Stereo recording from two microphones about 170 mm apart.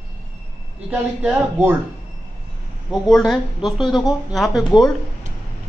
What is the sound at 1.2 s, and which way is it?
Speech, 10° right (ahead or behind).